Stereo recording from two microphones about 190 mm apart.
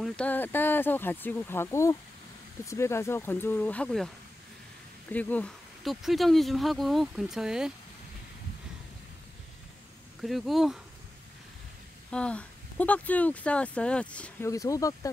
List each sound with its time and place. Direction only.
0.0 s speech: 5° left (ahead or behind)
5.1 s speech: 5° left (ahead or behind)
10.2 s speech: centre (ahead or behind)
12.1 s speech: 5° left (ahead or behind)
14.5 s speech: 15° left (ahead or behind)